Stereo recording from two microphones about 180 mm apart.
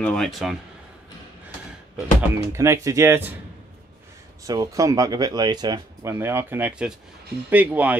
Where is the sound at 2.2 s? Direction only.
15° right (ahead or behind).